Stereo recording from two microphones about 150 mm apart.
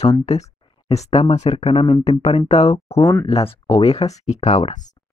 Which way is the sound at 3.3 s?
40° left (ahead or behind).